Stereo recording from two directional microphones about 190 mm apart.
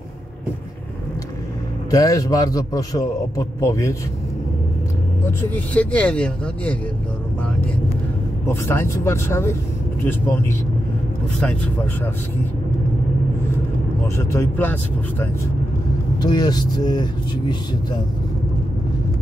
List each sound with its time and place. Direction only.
1.9 s a man's voice: 15° left (ahead or behind)
5.4 s a man's voice: 10° left (ahead or behind)
8.5 s a man's voice: 15° left (ahead or behind)
14.0 s a man's voice: 15° left (ahead or behind)
16.2 s speech: 20° left (ahead or behind)